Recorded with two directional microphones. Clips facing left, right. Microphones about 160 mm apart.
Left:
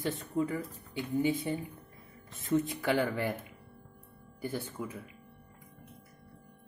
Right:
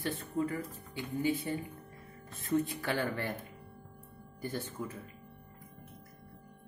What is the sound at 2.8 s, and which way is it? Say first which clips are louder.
Speech: left 4 dB; 15° left (ahead or behind).